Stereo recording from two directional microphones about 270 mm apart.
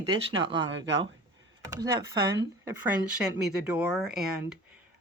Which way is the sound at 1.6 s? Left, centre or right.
Centre.